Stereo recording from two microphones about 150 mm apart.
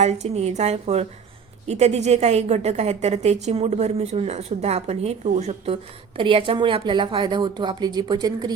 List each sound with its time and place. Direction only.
0.0 s a woman's voice: 45° right (ahead or behind); by 8.5 s 30° right (ahead or behind)